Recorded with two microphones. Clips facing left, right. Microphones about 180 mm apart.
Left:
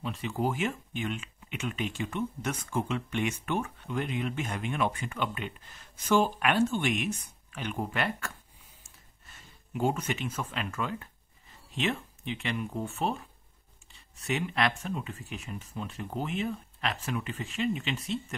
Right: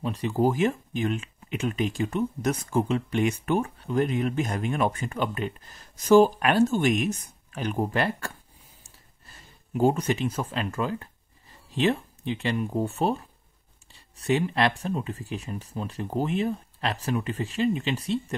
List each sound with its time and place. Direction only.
0.0 s speech: 40° right (ahead or behind)